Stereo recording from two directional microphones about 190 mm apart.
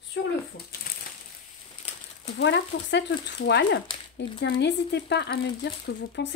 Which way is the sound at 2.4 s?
65° left (ahead or behind).